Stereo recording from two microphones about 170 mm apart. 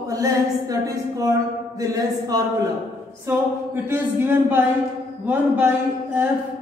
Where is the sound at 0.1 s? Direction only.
20° right (ahead or behind).